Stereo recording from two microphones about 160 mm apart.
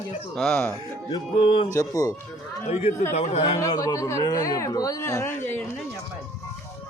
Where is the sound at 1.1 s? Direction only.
35° left (ahead or behind).